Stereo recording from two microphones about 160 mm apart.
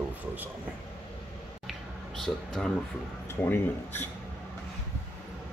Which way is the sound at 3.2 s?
15° left (ahead or behind).